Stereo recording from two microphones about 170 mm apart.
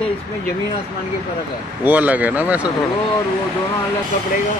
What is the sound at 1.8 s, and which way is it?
Speech, 10° right (ahead or behind).